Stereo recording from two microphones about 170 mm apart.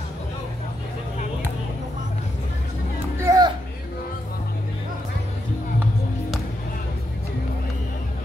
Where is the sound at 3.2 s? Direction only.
20° right (ahead or behind).